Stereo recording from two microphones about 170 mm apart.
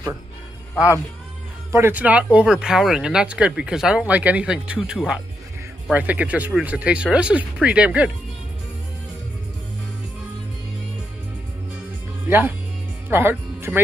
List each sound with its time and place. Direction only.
1.7 s speech: 15° right (ahead or behind)
12.3 s speech: 10° right (ahead or behind)